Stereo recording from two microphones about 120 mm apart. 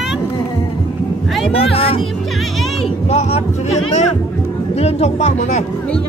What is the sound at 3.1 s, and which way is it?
Speech, 65° left (ahead or behind).